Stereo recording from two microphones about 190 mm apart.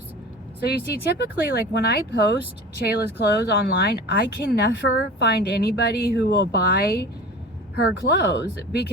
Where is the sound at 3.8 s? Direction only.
60° left (ahead or behind).